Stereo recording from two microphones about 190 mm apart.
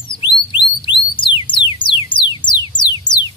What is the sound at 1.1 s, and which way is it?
Music, 25° left (ahead or behind).